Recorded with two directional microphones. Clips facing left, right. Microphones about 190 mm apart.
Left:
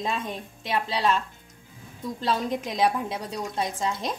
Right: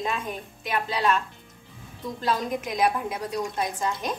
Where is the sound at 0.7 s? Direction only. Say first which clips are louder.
Even; 30° left (ahead or behind).